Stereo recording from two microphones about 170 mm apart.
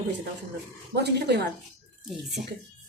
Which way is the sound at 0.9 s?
80° right.